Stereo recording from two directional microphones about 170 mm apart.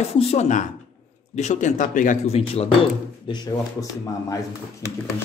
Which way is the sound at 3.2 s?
25° left (ahead or behind).